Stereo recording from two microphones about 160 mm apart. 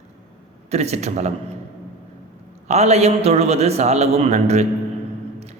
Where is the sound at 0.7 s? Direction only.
40° right (ahead or behind).